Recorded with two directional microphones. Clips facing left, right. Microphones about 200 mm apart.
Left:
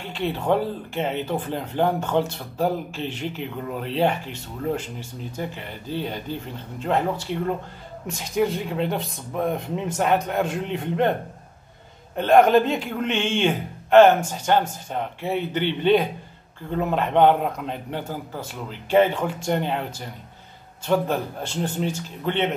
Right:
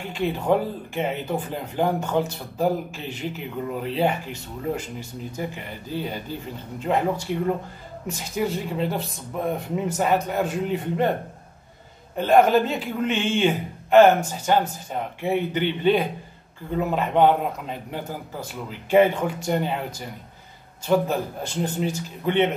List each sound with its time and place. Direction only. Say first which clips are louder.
0.0 s speech: right 1 dB; 10° right (ahead or behind)
5.9 s speech: left 1 dB; 10° right (ahead or behind)
12.2 s speech: left 1 dB; 5° right (ahead or behind)
20.8 s speech: right 1 dB; 10° right (ahead or behind)